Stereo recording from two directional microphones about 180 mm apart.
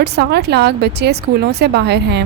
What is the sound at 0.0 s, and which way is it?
Speech, 65° right (ahead or behind).